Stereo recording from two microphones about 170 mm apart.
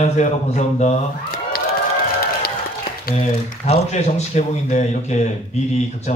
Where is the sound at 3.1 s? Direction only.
40° left (ahead or behind).